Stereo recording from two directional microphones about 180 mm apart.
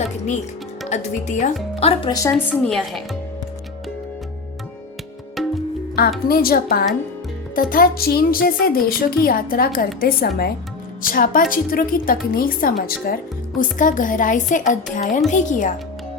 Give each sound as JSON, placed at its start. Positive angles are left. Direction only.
{"t": 0.9, "sound": "speech", "side_deg": 40}
{"t": 2.3, "sound": "a woman's voice", "side_deg": 0}
{"t": 5.4, "sound": "music", "side_deg": 0}
{"t": 6.2, "sound": "a woman's voice", "side_deg": 55}